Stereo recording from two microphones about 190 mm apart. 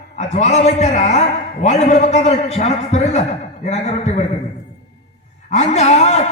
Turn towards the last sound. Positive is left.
turn(degrees=35)  # may be behind; listen again after turning